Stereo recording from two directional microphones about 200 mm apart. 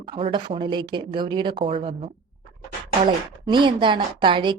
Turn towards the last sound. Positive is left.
turn(degrees=-25)  # may be behind; listen again after turning